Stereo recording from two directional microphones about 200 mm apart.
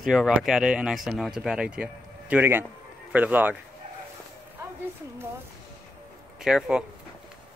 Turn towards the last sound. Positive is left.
turn(degrees=-5)  # may be behind; listen again after turning